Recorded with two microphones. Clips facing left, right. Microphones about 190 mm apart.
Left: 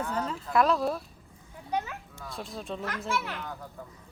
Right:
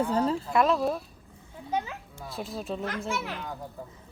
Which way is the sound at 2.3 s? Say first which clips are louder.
Right 3 dB; 5° right (ahead or behind).